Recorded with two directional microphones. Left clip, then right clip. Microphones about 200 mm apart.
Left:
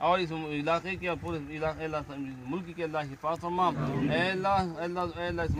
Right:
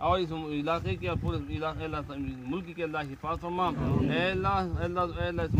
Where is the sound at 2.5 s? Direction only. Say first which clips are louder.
Even; 5° right (ahead or behind).